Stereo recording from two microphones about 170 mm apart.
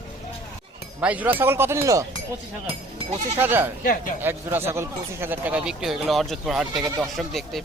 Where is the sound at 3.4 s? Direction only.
10° right (ahead or behind).